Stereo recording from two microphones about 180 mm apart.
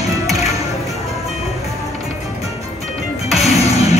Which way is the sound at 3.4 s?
35° left (ahead or behind).